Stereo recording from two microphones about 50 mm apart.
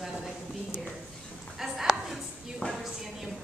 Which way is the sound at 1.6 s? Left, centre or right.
Centre.